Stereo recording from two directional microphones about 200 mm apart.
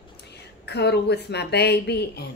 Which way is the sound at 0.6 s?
55° left (ahead or behind).